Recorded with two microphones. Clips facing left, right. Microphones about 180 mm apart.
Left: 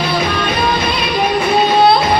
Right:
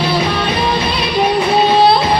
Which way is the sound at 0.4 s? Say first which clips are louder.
Even; 30° right (ahead or behind).